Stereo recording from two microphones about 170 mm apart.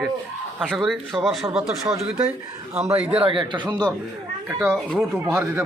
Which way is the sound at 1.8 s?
20° right (ahead or behind).